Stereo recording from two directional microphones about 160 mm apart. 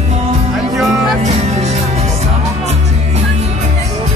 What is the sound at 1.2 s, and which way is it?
Music, 45° right (ahead or behind).